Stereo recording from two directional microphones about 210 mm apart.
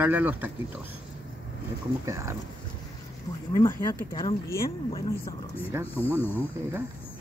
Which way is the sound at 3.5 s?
15° left (ahead or behind).